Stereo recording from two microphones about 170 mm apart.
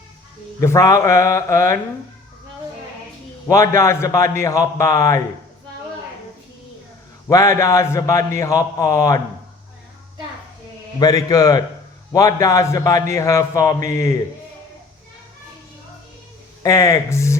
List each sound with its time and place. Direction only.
0.6 s speech: 15° left (ahead or behind)
3.5 s a man's voice: 20° left (ahead or behind)
7.3 s a man's voice: 20° left (ahead or behind)
11.0 s a man's voice: 20° left (ahead or behind)
16.6 s speech: 20° left (ahead or behind)